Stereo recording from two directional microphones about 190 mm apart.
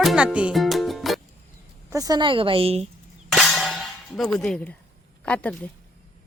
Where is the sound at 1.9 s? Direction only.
20° right (ahead or behind).